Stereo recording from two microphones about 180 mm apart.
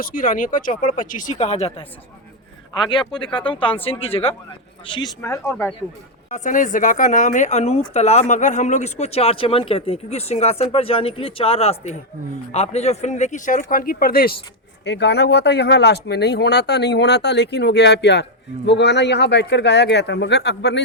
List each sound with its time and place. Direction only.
0.0 s speech: 50° left (ahead or behind)
2.9 s speech: 25° left (ahead or behind)
6.3 s speech: 45° left (ahead or behind)
14.8 s speech: 70° left (ahead or behind)